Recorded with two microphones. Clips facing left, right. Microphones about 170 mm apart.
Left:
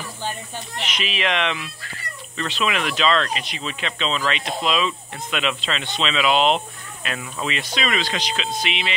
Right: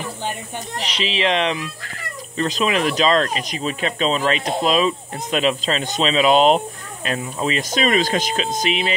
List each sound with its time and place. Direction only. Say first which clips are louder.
0.7 s speech: right 4 dB; 30° right (ahead or behind)